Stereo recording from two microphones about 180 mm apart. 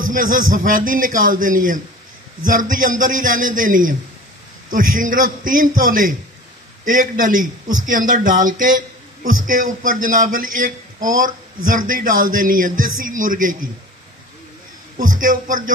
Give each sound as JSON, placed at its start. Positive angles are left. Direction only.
{"t": 0.0, "sound": "a man's voice", "side_deg": -50}
{"t": 15.0, "sound": "a man's voice", "side_deg": -50}